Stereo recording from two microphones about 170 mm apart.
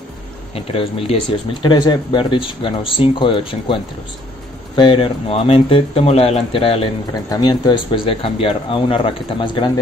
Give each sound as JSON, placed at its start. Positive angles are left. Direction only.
{"t": 0.6, "sound": "speech", "side_deg": 35}